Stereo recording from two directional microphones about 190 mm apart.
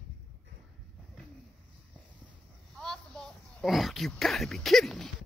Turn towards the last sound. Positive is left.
turn(degrees=0)  # may be behind; listen again after turning